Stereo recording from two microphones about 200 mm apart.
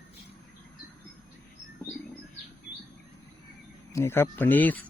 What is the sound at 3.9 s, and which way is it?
Speech, 10° left (ahead or behind).